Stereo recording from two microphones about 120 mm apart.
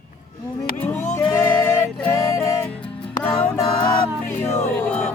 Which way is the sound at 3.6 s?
40° left (ahead or behind).